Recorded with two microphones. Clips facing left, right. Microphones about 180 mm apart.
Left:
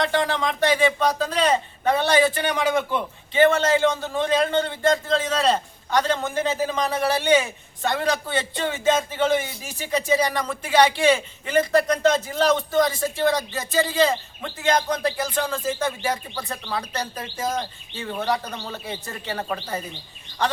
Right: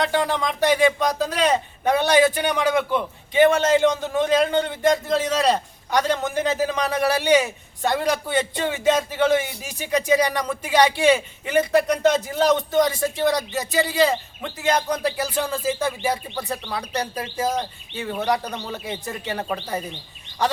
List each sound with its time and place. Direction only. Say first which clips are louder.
0.0 s a man's voice: even; 10° right (ahead or behind)